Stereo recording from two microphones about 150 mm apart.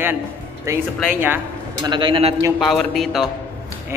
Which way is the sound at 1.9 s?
35° right (ahead or behind).